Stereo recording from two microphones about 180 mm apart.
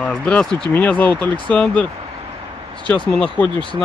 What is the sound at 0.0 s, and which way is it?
Speech, 5° left (ahead or behind).